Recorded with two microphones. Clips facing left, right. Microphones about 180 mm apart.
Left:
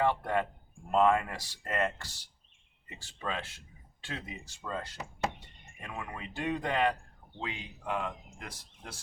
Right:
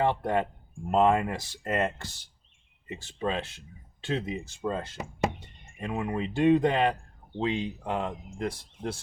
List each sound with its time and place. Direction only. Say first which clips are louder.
0.0 s speech: right 3 dB; 20° right (ahead or behind)